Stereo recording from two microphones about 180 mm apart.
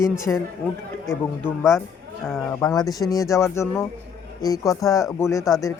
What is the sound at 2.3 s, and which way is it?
Speech, 15° left (ahead or behind).